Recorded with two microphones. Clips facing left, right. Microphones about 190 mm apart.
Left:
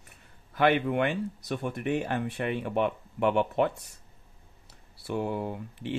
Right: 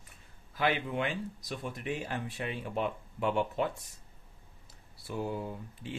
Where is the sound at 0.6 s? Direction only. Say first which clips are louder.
Left 7 dB; 60° left (ahead or behind).